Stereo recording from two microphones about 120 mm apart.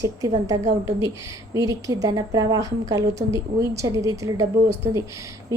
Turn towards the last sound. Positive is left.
turn(degrees=-25)  # may be behind; listen again after turning